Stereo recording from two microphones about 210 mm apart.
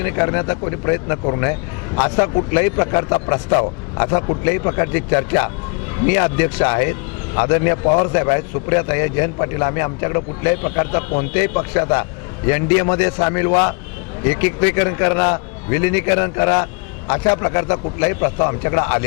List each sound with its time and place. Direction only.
0.0 s a man's voice: 20° left (ahead or behind)